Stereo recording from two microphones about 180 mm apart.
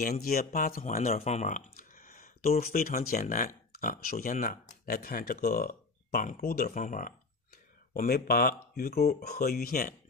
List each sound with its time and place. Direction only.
0.0 s speech: 55° left (ahead or behind)